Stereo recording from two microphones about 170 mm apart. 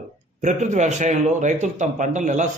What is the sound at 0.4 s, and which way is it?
Speech, 45° right (ahead or behind).